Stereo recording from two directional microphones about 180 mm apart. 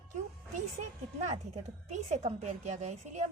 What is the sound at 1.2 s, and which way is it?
A woman's voice, 40° right (ahead or behind).